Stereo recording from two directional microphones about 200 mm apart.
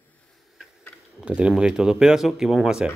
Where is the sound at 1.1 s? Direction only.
5° right (ahead or behind).